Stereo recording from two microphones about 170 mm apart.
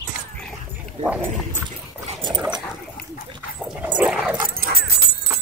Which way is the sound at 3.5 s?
5° right (ahead or behind).